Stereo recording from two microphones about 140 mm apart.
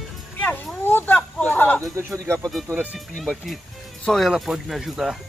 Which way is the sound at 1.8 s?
20° right (ahead or behind).